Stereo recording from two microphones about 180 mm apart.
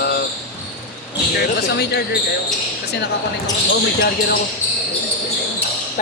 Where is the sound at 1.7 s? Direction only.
65° left (ahead or behind).